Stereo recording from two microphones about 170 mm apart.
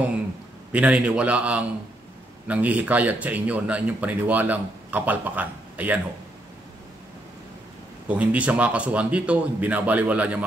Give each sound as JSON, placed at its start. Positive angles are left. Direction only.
{"t": 0.7, "sound": "a man's voice", "side_deg": -10}
{"t": 8.1, "sound": "a man's voice", "side_deg": -10}